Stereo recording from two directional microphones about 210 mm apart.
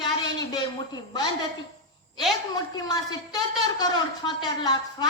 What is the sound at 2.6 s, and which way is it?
A woman's voice, 20° left (ahead or behind).